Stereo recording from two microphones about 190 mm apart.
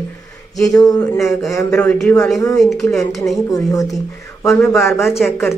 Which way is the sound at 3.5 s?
20° left (ahead or behind).